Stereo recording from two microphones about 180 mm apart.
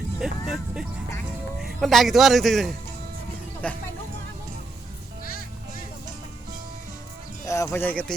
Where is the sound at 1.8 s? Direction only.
Centre (ahead or behind).